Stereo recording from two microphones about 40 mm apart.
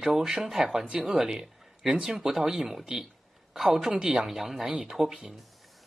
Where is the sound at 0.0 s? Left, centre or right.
Centre.